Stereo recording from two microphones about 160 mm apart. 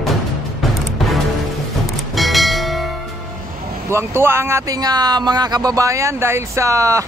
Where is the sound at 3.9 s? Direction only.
15° right (ahead or behind).